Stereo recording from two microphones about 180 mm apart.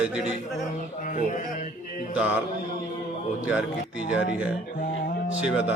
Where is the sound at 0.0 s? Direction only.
5° right (ahead or behind).